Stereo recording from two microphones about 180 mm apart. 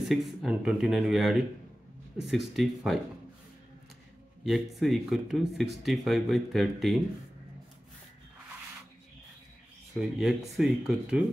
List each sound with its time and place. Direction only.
0.1 s speech: centre (ahead or behind)
4.5 s speech: centre (ahead or behind)
9.9 s speech: centre (ahead or behind)